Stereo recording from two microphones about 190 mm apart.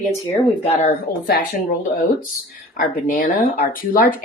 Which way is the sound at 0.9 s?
50° left (ahead or behind).